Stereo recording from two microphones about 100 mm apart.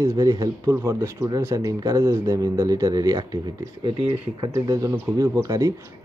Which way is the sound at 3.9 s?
50° right (ahead or behind).